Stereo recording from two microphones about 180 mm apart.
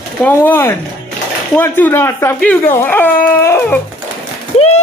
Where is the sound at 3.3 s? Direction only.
15° left (ahead or behind).